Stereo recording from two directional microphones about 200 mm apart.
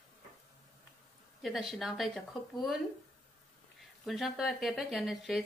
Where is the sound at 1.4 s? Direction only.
Centre (ahead or behind).